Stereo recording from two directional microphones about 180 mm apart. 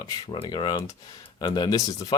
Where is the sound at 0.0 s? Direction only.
25° left (ahead or behind).